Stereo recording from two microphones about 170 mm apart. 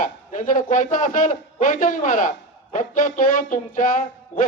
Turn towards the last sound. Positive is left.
turn(degrees=50)  # may be behind; listen again after turning